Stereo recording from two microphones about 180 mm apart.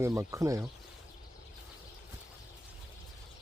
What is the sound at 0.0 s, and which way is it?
Speech, 15° right (ahead or behind).